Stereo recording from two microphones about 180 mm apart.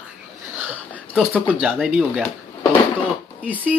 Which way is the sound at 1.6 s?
5° right (ahead or behind).